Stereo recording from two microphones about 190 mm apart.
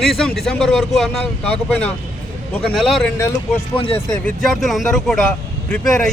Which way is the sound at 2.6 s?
Centre (ahead or behind).